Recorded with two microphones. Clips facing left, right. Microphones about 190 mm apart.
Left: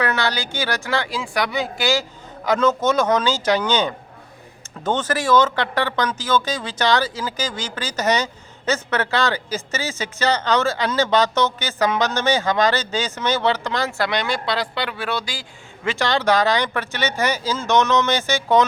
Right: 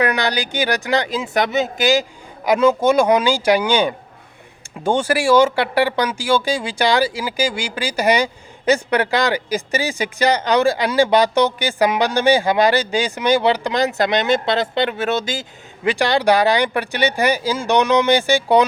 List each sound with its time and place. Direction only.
0.0 s speech: 15° right (ahead or behind)